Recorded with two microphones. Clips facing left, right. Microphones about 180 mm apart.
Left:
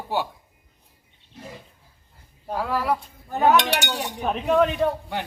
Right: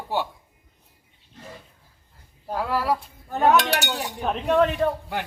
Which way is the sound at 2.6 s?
10° right (ahead or behind).